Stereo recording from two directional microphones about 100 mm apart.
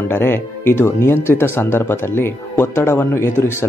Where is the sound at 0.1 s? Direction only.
20° left (ahead or behind).